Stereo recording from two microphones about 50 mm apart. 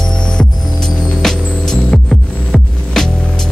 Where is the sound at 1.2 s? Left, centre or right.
Centre.